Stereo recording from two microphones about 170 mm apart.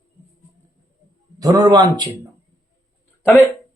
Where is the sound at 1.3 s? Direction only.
20° right (ahead or behind).